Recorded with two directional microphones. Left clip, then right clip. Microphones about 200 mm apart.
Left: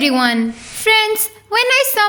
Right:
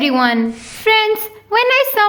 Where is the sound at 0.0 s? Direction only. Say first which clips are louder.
Right 1 dB; 45° left (ahead or behind).